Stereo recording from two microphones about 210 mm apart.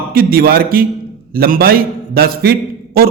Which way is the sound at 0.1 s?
45° right (ahead or behind).